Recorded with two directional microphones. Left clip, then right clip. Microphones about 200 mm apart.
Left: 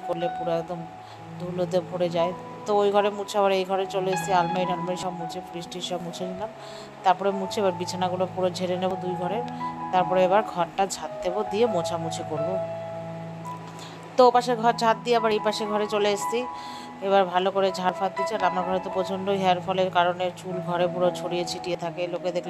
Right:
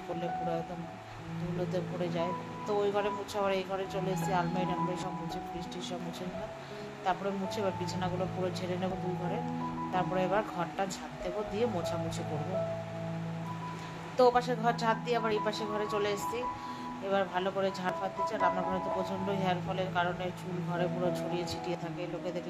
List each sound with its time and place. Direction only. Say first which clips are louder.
1.7 s speech: left 12 dB; 35° left (ahead or behind)
7.1 s speech: left 11 dB; 35° left (ahead or behind)
9.9 s speech: left 11 dB; 35° left (ahead or behind)
14.1 s speech: left 8 dB; 35° left (ahead or behind)